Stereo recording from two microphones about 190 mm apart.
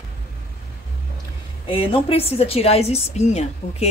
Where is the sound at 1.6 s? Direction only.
30° left (ahead or behind).